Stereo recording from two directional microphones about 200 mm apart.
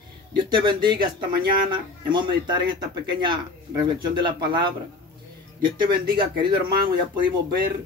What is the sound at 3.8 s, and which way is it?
Speech, 20° right (ahead or behind).